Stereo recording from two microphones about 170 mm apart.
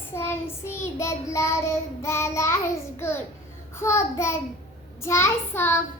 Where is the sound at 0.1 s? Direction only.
15° left (ahead or behind).